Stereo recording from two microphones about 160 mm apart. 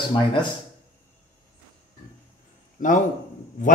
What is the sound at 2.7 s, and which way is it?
Speech, 50° left (ahead or behind).